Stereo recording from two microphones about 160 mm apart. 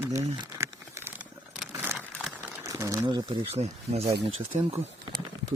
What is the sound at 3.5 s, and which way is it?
Speech, 40° right (ahead or behind).